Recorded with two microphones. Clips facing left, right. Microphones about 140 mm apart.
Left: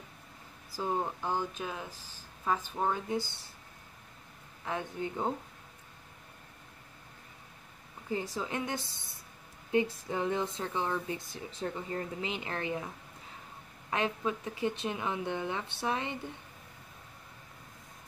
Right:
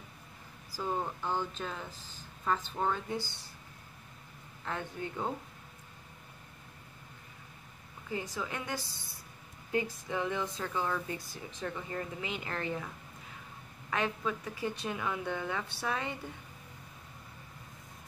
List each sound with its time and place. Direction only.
0.7 s speech: 15° left (ahead or behind)
4.6 s speech: 15° left (ahead or behind)
8.1 s speech: 30° left (ahead or behind)